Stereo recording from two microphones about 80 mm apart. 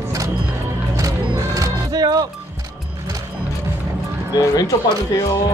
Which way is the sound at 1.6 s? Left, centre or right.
Right.